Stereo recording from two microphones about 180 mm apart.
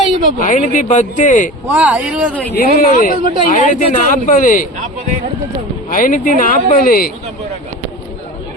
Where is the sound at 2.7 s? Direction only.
50° left (ahead or behind).